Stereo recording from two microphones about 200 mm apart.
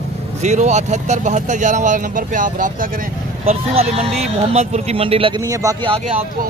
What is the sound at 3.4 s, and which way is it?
Speech, 30° right (ahead or behind).